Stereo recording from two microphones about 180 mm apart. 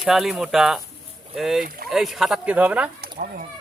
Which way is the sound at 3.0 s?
55° right (ahead or behind).